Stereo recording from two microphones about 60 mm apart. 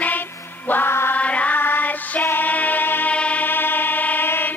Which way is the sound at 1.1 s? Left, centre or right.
Left.